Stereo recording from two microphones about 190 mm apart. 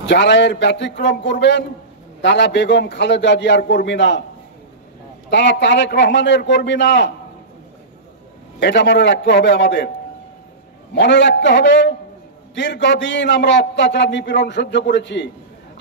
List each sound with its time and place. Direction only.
0.0 s a man's voice: 65° left (ahead or behind)
5.3 s a man's voice: 65° left (ahead or behind)
8.5 s a man's voice: 65° left (ahead or behind)
10.9 s a man's voice: 65° left (ahead or behind)